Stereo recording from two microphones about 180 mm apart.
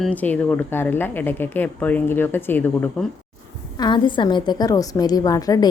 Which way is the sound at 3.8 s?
25° left (ahead or behind).